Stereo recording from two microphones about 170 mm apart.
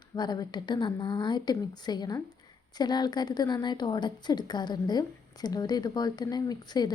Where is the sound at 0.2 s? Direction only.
25° left (ahead or behind).